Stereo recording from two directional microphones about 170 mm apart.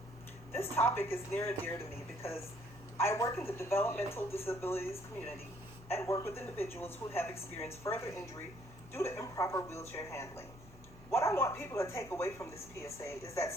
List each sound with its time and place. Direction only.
0.5 s speech: 15° left (ahead or behind)